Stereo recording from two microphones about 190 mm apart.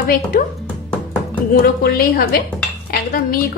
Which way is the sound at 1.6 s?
50° left (ahead or behind).